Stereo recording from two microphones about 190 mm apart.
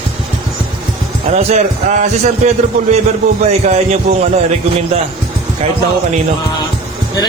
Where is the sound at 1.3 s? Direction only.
35° right (ahead or behind).